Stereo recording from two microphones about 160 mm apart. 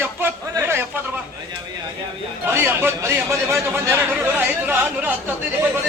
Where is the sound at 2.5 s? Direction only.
15° right (ahead or behind).